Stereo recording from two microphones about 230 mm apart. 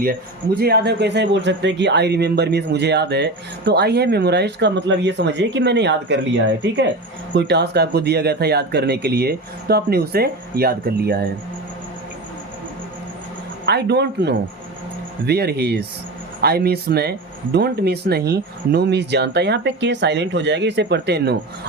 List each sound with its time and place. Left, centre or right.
0.0 s speech: right
13.7 s speech: right